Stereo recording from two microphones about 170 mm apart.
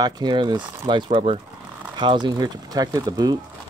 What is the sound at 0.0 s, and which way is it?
Speech, 25° right (ahead or behind).